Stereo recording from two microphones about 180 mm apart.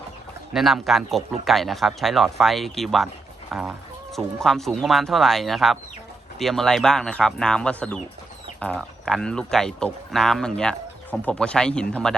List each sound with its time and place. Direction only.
0.5 s speech: centre (ahead or behind)